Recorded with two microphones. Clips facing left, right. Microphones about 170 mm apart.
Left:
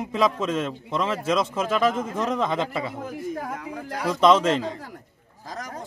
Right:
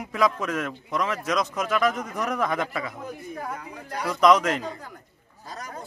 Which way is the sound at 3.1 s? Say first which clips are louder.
Left 4 dB; 90° left.